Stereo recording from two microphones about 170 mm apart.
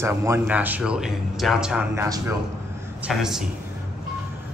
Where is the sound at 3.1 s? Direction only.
5° right (ahead or behind).